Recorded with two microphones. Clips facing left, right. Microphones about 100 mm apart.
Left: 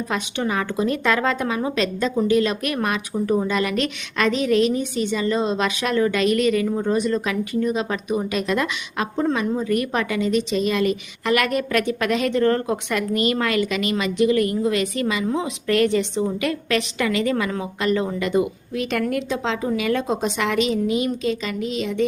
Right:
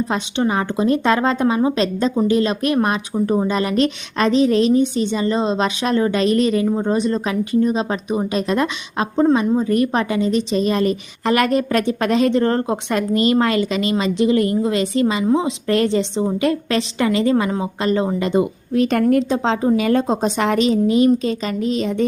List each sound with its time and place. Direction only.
0.1 s a woman's voice: 30° right (ahead or behind)